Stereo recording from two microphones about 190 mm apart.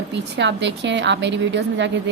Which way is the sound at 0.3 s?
70° right (ahead or behind).